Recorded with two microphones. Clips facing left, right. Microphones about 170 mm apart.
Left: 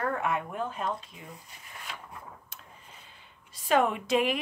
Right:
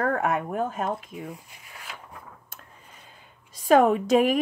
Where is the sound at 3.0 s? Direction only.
45° right (ahead or behind).